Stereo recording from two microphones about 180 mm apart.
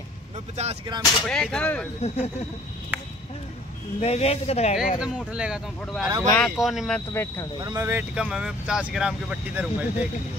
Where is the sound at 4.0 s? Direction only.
35° left (ahead or behind).